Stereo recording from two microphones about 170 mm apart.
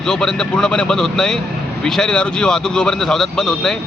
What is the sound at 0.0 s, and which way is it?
Speech, 5° left (ahead or behind).